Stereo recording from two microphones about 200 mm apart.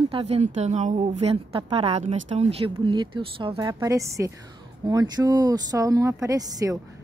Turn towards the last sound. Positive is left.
turn(degrees=-20)  # may be behind; listen again after turning